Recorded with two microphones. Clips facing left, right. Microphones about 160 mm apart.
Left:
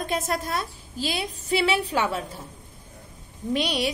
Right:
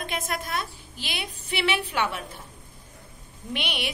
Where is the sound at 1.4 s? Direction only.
35° left (ahead or behind).